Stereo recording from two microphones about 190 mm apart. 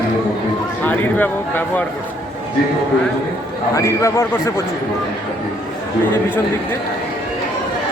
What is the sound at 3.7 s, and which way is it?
Speech, 15° left (ahead or behind).